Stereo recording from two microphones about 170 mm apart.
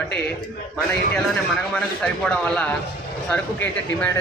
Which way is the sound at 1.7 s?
5° left (ahead or behind).